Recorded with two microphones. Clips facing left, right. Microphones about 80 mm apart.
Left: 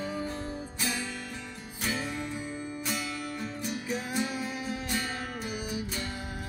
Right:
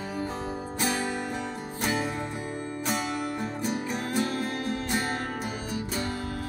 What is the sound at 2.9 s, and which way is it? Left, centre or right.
Music, right.